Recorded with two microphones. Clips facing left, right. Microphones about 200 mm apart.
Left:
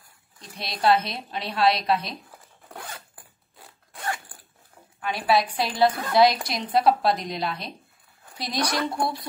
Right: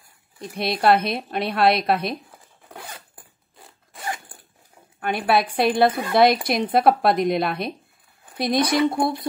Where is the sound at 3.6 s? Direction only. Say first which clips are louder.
Even; centre (ahead or behind).